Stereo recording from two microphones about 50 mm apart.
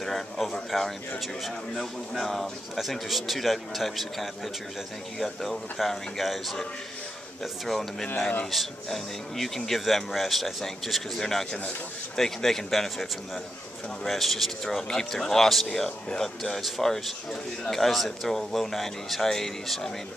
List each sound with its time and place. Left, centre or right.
0.0 s speech: centre
7.6 s speech: centre